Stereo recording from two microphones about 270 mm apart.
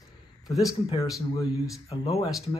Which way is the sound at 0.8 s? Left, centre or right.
Left.